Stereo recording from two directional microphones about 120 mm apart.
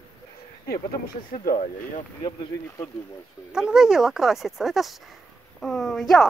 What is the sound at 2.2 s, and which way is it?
Speech, 25° left (ahead or behind).